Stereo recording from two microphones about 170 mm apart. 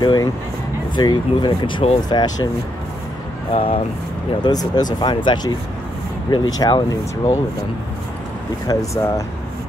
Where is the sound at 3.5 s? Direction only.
30° left (ahead or behind).